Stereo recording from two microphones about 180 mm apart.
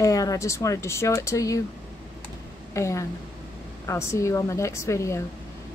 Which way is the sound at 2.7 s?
15° left (ahead or behind).